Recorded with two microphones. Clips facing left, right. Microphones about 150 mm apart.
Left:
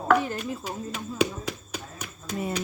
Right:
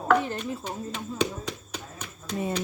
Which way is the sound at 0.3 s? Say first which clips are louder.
Even; 10° left (ahead or behind).